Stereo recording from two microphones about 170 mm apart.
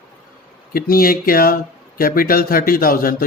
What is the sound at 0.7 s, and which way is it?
Speech, 60° left (ahead or behind).